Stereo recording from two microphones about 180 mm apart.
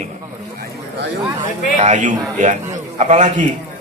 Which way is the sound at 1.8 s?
40° right (ahead or behind).